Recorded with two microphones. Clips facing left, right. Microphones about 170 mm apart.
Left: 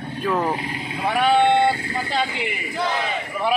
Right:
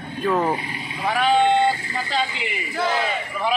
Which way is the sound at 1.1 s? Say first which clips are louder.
Left 1 dB; 65° left (ahead or behind).